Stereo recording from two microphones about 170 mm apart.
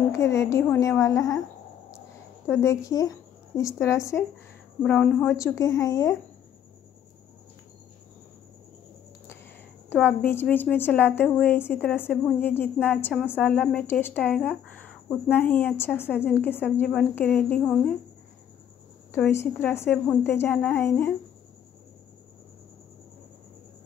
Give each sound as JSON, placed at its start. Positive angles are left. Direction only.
{"t": 0.1, "sound": "a woman's voice", "side_deg": 15}
{"t": 2.4, "sound": "speech", "side_deg": 15}
{"t": 9.8, "sound": "speech", "side_deg": 10}
{"t": 19.1, "sound": "speech", "side_deg": 15}